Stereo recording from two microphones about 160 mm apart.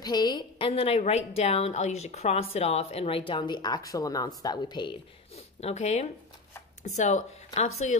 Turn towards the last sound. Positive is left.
turn(degrees=45)  # may be behind; listen again after turning